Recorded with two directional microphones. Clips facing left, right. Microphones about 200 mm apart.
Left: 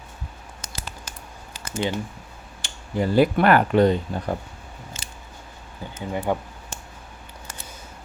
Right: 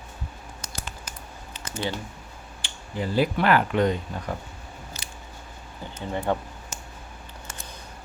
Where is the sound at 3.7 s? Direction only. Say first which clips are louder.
Left 5 dB; 35° left (ahead or behind).